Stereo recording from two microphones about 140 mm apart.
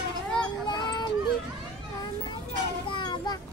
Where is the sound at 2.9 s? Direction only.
35° left (ahead or behind).